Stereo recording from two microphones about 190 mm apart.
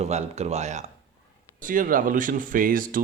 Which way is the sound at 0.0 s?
35° right (ahead or behind).